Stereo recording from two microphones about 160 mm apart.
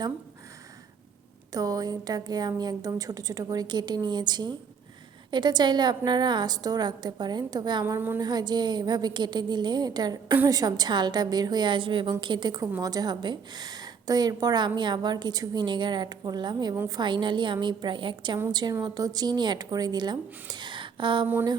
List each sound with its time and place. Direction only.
1.5 s a woman's voice: 25° right (ahead or behind)
7.9 s a woman's voice: 15° right (ahead or behind)
8.2 s a woman's voice: 25° right (ahead or behind)
16.7 s a woman's voice: 15° right (ahead or behind)
17.0 s a woman's voice: 30° right (ahead or behind)